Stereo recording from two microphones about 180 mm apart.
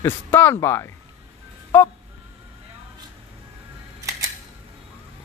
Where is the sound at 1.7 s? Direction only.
10° left (ahead or behind).